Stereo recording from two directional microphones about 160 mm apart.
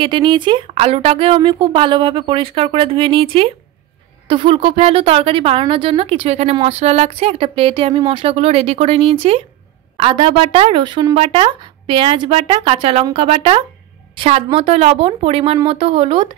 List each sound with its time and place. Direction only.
0.0 s a woman's voice: 30° right (ahead or behind)